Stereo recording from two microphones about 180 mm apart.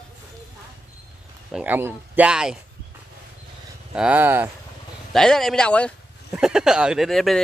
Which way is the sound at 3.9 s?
5° right (ahead or behind).